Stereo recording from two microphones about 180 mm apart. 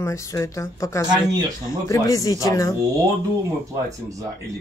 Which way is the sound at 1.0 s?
20° right (ahead or behind).